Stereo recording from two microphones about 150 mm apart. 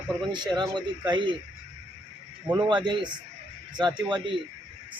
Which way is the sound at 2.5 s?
30° right (ahead or behind).